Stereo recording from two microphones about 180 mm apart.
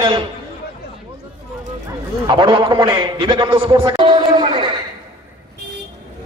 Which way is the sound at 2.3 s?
25° right (ahead or behind).